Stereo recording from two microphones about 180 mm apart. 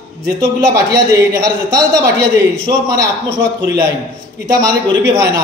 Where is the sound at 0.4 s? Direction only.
20° right (ahead or behind).